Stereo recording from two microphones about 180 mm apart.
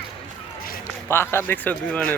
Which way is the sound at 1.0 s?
15° left (ahead or behind).